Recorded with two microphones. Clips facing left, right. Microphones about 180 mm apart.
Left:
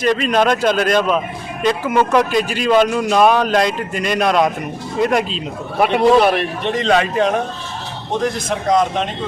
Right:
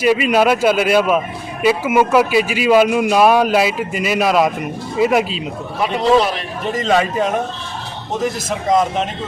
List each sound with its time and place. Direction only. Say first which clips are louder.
0.0 s a man's voice: right 2 dB; 10° right (ahead or behind)
6.0 s a man's voice: left 2 dB; 60° left (ahead or behind)
6.7 s a man's voice: right 1 dB; 5° right (ahead or behind)